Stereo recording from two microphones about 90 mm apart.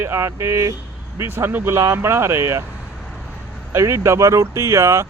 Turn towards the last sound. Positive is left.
turn(degrees=-30)  # may be behind; listen again after turning